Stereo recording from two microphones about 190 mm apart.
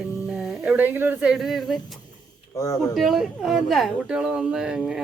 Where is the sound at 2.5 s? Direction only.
15° left (ahead or behind).